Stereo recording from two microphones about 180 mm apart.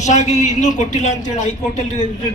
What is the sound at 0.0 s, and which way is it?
A man's voice, 40° left (ahead or behind).